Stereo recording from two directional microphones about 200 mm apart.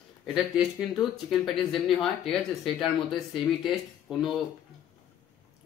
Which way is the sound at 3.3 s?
Centre (ahead or behind).